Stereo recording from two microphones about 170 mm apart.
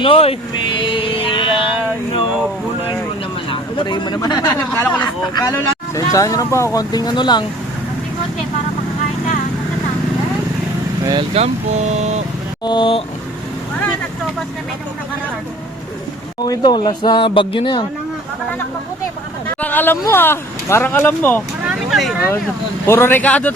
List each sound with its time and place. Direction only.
0.0 s speech: 35° left (ahead or behind)
3.5 s speech: 30° left (ahead or behind)
4.8 s speech: 10° left (ahead or behind)
5.2 s speech: 25° left (ahead or behind)
11.0 s speech: 25° right (ahead or behind)
11.3 s speech: 40° right (ahead or behind)
12.6 s speech: 30° left (ahead or behind)
16.4 s speech: 25° left (ahead or behind)
19.5 s a sound: 10° left (ahead or behind)
20.0 s speech: 15° left (ahead or behind)
21.8 s speech: centre (ahead or behind)
22.9 s speech: 15° left (ahead or behind)